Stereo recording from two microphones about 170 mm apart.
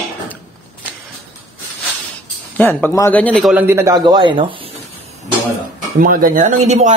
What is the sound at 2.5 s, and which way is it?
Speech, 10° left (ahead or behind).